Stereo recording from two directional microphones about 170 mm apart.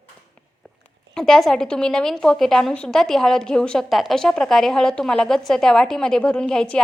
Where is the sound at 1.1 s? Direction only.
5° left (ahead or behind).